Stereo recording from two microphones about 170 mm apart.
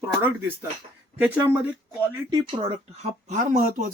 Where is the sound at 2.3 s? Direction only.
20° right (ahead or behind).